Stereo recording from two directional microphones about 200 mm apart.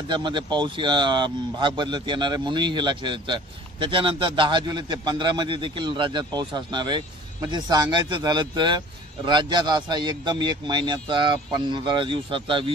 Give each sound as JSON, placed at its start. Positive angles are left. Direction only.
{"t": 0.1, "sound": "speech", "side_deg": -20}